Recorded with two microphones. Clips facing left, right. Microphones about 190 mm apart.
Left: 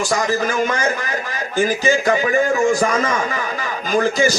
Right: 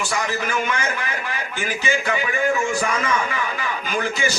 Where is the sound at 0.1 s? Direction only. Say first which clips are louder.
Left 5 dB; 40° left (ahead or behind).